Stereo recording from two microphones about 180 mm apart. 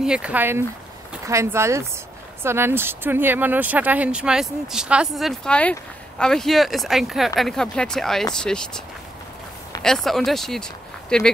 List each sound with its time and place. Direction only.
0.0 s speech: 5° right (ahead or behind)
9.8 s speech: centre (ahead or behind)